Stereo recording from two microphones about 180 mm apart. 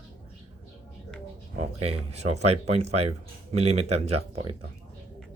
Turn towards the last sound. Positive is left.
turn(degrees=-35)  # may be behind; listen again after turning